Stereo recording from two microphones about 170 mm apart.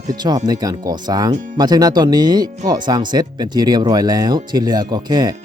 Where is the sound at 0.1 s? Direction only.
25° right (ahead or behind).